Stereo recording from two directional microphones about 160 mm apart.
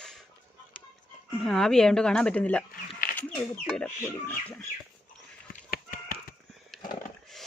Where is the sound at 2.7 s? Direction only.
65° left (ahead or behind).